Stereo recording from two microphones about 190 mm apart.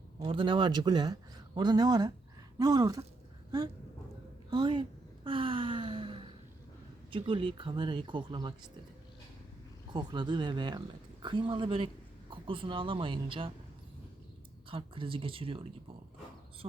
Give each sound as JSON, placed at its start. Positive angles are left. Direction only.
{"t": 0.2, "sound": "speech", "side_deg": -25}
{"t": 4.5, "sound": "a sound", "side_deg": -25}
{"t": 7.1, "sound": "speech", "side_deg": -25}
{"t": 9.9, "sound": "speech", "side_deg": -25}
{"t": 14.7, "sound": "speech", "side_deg": -30}